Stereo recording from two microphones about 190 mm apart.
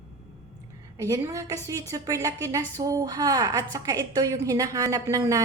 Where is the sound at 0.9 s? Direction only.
15° right (ahead or behind).